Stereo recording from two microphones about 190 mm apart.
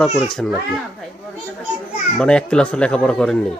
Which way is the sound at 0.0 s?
Centre (ahead or behind).